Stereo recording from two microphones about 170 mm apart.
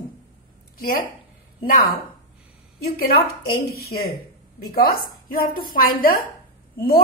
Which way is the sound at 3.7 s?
65° left (ahead or behind).